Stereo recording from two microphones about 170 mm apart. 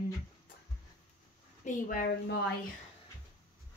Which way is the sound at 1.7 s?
65° left (ahead or behind).